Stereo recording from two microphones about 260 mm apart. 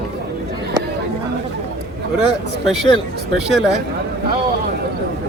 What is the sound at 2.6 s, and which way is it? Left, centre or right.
Speech, centre.